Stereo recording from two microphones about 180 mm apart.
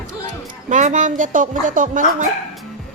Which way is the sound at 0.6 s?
40° right (ahead or behind).